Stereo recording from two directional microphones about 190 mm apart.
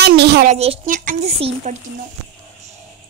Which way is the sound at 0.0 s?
60° right (ahead or behind).